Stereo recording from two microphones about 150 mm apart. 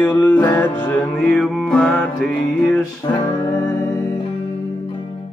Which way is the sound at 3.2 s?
25° left (ahead or behind).